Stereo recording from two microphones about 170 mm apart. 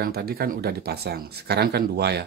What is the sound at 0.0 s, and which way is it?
Speech, 65° right (ahead or behind).